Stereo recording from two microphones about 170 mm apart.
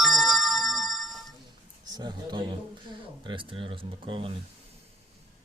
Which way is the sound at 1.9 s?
25° right (ahead or behind).